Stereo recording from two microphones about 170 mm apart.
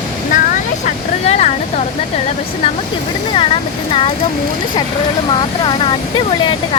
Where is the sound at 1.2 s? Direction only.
40° left (ahead or behind).